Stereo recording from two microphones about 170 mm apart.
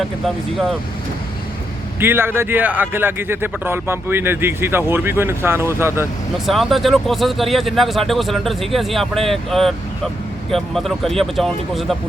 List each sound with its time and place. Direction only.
2.0 s a man's voice: 15° right (ahead or behind)
6.4 s speech: centre (ahead or behind)